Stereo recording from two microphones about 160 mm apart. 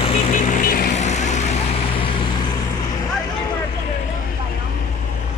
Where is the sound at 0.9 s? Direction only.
45° left (ahead or behind).